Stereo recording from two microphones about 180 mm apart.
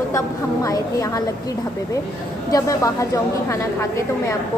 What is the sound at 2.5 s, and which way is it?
A woman's voice, 20° left (ahead or behind).